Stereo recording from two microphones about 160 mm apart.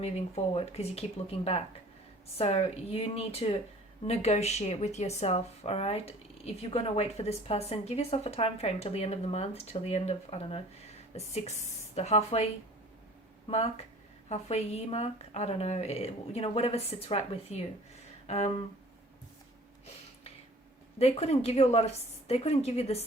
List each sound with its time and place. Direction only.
0.0 s speech: 40° left (ahead or behind)
2.4 s a woman's voice: 40° left (ahead or behind)
13.5 s speech: 40° left (ahead or behind)
18.3 s a sound: 40° left (ahead or behind)
21.0 s speech: 40° left (ahead or behind)